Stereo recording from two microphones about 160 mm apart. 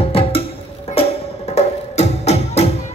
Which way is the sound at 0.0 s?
35° left (ahead or behind).